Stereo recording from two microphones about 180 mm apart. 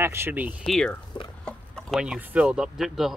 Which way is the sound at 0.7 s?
5° left (ahead or behind).